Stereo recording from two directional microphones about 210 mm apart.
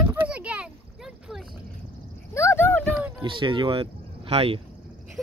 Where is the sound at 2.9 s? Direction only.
5° right (ahead or behind).